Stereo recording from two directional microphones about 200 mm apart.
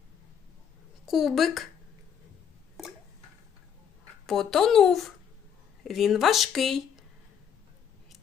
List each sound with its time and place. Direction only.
1.0 s speech: centre (ahead or behind)
4.3 s speech: centre (ahead or behind)